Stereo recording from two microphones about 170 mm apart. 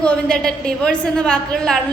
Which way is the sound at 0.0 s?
5° left (ahead or behind).